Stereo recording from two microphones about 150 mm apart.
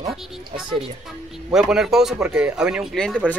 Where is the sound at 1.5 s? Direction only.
5° right (ahead or behind).